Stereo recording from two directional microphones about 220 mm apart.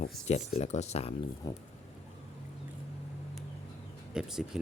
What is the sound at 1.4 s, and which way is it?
Speech, 15° left (ahead or behind).